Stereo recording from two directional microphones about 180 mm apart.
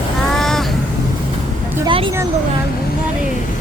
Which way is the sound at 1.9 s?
30° right (ahead or behind).